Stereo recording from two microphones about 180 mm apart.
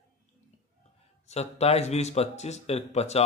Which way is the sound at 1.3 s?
35° left (ahead or behind).